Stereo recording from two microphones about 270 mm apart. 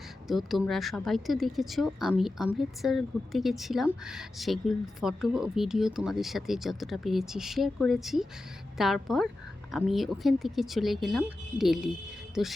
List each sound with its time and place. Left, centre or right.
0.3 s speech: centre